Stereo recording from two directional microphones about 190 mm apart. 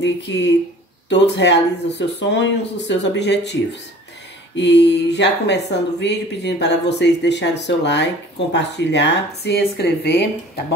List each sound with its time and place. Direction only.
0.0 s speech: 65° left (ahead or behind)
4.6 s speech: 65° left (ahead or behind)